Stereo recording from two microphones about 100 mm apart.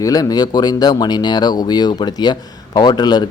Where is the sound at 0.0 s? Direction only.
40° left (ahead or behind).